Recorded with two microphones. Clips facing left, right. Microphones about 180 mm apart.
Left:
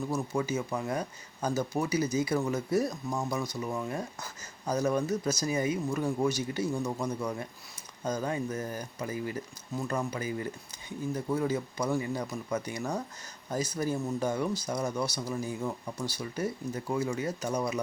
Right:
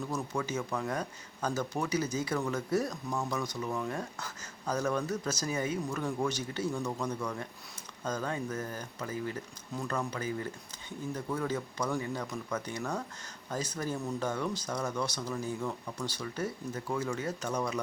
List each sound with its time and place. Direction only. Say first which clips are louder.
0.4 s speech: left 2 dB; 10° left (ahead or behind)